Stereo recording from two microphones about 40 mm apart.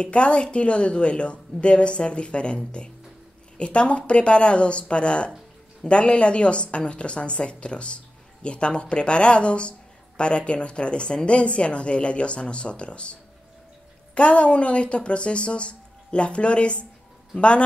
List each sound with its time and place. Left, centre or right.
0.0 s a woman's voice: left